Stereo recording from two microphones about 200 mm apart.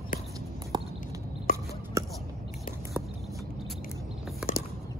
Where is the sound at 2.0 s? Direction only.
15° right (ahead or behind).